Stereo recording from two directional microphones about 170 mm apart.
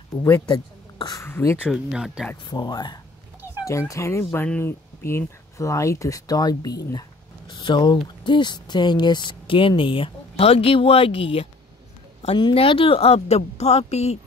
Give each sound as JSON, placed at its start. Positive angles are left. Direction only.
{"t": 0.5, "sound": "speech", "side_deg": 25}
{"t": 1.2, "sound": "speech", "side_deg": 15}
{"t": 1.7, "sound": "speech", "side_deg": 0}
{"t": 2.5, "sound": "speech", "side_deg": 25}